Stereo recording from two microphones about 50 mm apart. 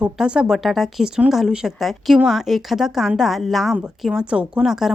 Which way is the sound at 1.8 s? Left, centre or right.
Centre.